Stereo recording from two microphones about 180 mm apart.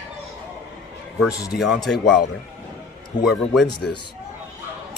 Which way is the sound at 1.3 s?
65° left (ahead or behind).